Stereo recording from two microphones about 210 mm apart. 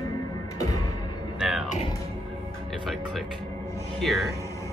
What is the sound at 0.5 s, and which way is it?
Music, 15° left (ahead or behind).